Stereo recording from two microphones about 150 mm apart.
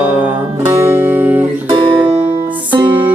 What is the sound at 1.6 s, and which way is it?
Guitar, 35° right (ahead or behind).